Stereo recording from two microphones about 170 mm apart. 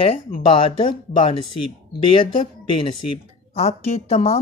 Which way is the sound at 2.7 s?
30° left (ahead or behind).